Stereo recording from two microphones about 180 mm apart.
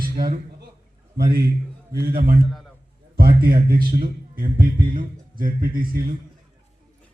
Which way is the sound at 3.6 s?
55° right (ahead or behind).